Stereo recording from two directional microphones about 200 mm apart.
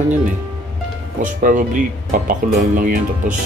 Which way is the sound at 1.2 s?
40° right (ahead or behind).